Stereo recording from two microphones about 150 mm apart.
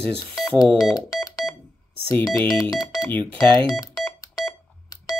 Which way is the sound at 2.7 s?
25° left (ahead or behind).